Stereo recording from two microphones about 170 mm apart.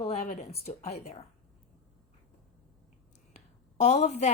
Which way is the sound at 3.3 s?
40° left (ahead or behind).